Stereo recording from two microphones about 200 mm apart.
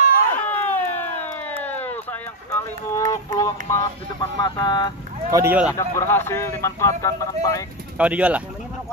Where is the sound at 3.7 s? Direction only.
20° left (ahead or behind).